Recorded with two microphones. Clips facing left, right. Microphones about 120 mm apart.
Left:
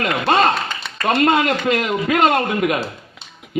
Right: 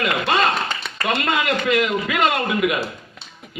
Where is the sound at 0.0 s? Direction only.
40° left (ahead or behind).